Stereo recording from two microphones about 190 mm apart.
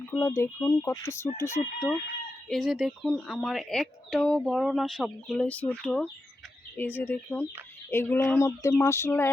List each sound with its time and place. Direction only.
0.1 s speech: 15° left (ahead or behind)
2.5 s speech: centre (ahead or behind)